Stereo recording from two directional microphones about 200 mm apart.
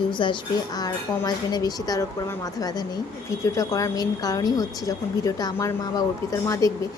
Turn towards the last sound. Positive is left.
turn(degrees=15)  # may be behind; listen again after turning